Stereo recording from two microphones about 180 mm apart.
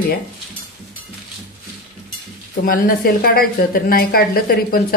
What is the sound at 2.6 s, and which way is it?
Speech, 50° left (ahead or behind).